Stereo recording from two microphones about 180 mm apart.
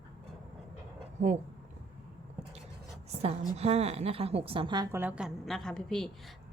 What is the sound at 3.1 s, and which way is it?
A woman's voice, 35° right (ahead or behind).